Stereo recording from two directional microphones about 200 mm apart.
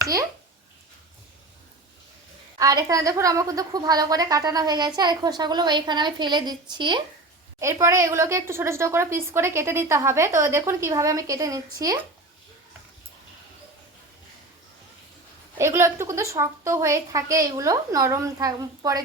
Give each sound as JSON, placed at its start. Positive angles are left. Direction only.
{"t": 0.0, "sound": "a child's voice", "side_deg": -15}
{"t": 2.6, "sound": "a woman's voice", "side_deg": -15}
{"t": 15.5, "sound": "a woman's voice", "side_deg": -15}